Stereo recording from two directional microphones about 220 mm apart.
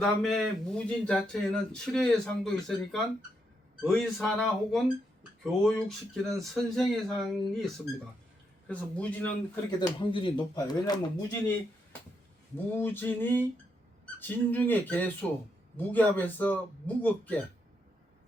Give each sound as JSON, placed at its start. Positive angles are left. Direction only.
{"t": 0.0, "sound": "speech", "side_deg": 0}
{"t": 9.6, "sound": "speech", "side_deg": 20}
{"t": 12.7, "sound": "speech", "side_deg": 10}